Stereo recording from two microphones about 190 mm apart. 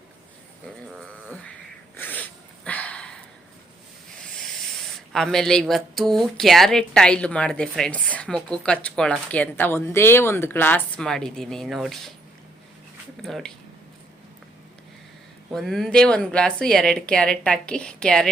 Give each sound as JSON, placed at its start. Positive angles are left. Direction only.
{"t": 0.9, "sound": "a sound", "side_deg": 5}
{"t": 5.1, "sound": "a woman's voice", "side_deg": 0}
{"t": 13.2, "sound": "a woman's voice", "side_deg": 0}
{"t": 15.5, "sound": "a woman's voice", "side_deg": 0}